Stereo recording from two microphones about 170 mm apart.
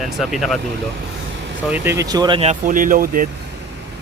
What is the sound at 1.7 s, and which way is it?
Speech, 15° right (ahead or behind).